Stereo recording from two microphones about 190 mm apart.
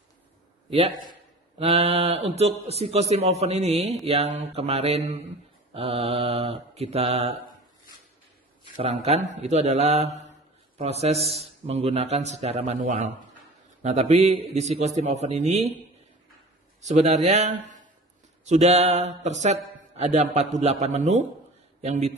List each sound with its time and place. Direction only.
1.6 s speech: 35° right (ahead or behind)
8.7 s speech: 35° right (ahead or behind)
16.8 s speech: 35° right (ahead or behind)